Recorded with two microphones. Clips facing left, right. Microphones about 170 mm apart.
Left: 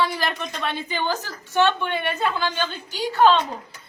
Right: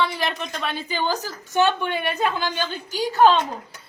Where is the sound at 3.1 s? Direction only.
40° right (ahead or behind).